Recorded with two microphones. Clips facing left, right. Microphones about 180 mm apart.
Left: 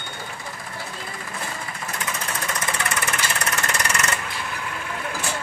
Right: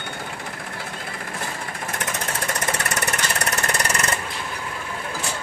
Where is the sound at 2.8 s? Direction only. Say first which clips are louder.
Right 1 dB; 40° right (ahead or behind).